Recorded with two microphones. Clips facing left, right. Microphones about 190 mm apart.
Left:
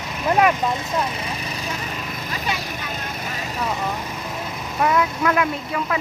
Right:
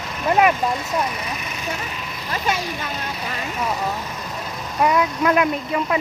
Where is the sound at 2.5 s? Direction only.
45° right (ahead or behind).